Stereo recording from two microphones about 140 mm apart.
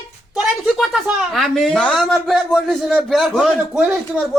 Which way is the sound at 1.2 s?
Centre (ahead or behind).